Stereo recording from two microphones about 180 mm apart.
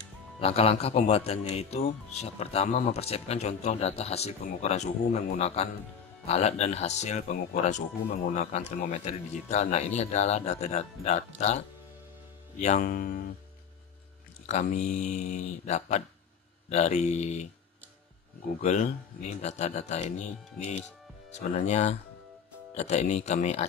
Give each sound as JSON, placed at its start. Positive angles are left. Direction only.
{"t": 0.4, "sound": "speech", "side_deg": 35}
{"t": 12.8, "sound": "speech", "side_deg": 50}
{"t": 14.4, "sound": "speech", "side_deg": 40}
{"t": 18.6, "sound": "speech", "side_deg": 40}